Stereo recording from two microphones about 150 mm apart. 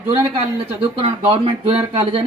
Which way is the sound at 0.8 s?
40° right (ahead or behind).